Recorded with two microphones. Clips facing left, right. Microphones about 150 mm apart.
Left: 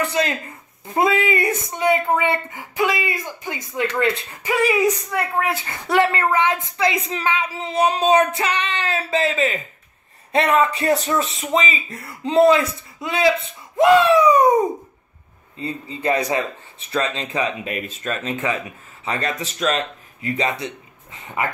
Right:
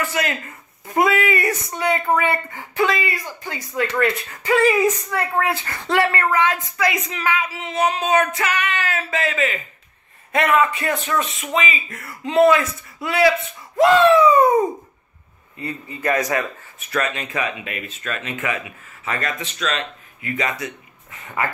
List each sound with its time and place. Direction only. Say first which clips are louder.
0.0 s a man's voice: left 2 dB; 25° left (ahead or behind)